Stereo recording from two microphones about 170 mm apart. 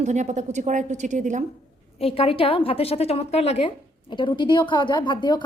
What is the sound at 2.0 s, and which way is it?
A woman's voice, 35° left (ahead or behind).